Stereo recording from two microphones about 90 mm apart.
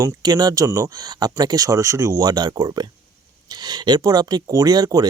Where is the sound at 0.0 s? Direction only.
45° right (ahead or behind).